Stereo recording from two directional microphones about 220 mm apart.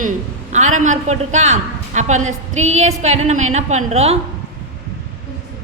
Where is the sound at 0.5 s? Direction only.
35° right (ahead or behind).